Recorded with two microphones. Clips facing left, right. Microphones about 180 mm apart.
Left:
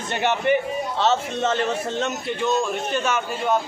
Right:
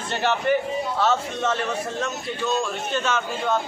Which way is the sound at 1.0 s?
25° left (ahead or behind).